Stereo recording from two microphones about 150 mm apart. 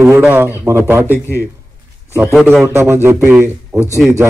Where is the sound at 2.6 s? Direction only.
15° right (ahead or behind).